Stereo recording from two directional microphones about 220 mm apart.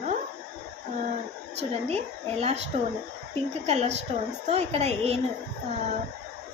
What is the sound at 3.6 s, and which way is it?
A woman's voice, 30° right (ahead or behind).